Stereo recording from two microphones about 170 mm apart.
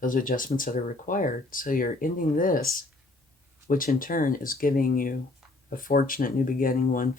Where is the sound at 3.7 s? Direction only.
55° left (ahead or behind).